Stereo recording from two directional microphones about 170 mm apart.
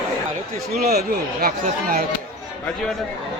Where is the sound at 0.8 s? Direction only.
65° right (ahead or behind).